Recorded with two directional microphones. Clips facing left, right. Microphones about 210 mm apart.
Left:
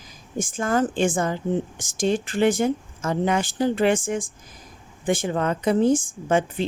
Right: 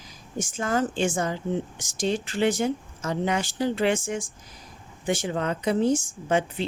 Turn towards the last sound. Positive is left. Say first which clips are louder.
# left 3 dB
turn(degrees=50)  # may be behind; listen again after turning